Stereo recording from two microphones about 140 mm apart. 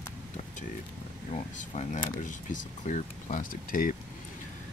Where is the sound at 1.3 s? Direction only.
55° left (ahead or behind); by 3.9 s 75° left (ahead or behind).